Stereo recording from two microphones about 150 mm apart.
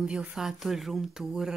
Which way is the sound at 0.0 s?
5° right (ahead or behind).